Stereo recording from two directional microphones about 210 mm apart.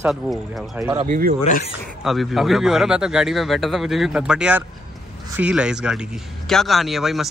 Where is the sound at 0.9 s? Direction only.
35° right (ahead or behind).